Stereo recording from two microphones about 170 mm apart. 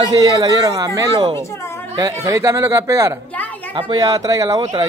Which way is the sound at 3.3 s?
10° left (ahead or behind).